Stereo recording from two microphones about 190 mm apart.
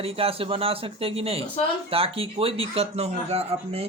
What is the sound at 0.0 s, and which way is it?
Speech, 30° right (ahead or behind).